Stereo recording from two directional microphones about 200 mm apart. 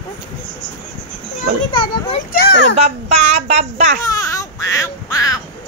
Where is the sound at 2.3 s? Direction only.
55° left (ahead or behind).